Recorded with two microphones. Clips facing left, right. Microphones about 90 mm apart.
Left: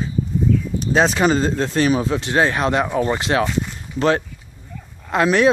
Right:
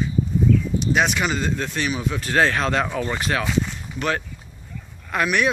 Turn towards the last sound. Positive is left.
turn(degrees=30)  # may be behind; listen again after turning